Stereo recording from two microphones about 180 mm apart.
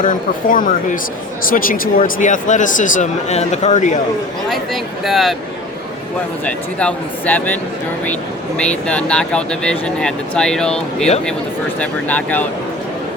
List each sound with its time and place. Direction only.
0.0 s speech: 45° left (ahead or behind)
4.4 s speech: centre (ahead or behind)
6.4 s speech: 5° left (ahead or behind)